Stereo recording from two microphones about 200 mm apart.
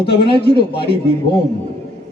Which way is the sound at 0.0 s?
25° left (ahead or behind).